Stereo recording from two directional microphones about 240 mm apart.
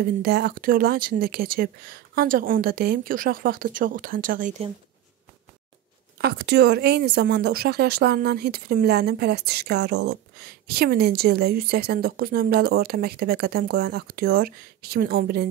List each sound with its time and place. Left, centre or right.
0.0 s speech: right
6.1 s speech: right